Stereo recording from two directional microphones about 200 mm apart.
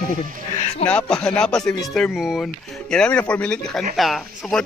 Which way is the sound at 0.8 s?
5° left (ahead or behind).